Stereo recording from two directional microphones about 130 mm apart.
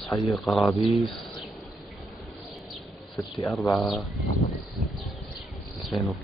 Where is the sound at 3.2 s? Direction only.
20° left (ahead or behind).